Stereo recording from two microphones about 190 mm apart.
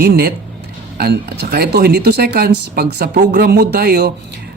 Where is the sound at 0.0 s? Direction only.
55° right (ahead or behind).